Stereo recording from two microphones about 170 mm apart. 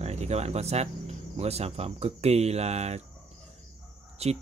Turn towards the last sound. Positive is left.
turn(degrees=-40)  # may be behind; listen again after turning